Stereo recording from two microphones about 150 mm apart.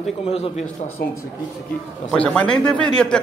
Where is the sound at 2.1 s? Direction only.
10° left (ahead or behind).